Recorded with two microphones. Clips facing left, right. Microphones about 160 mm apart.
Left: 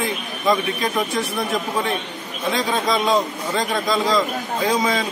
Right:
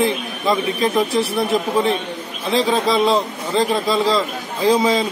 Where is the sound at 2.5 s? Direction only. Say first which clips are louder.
Right 4 dB; 30° right (ahead or behind).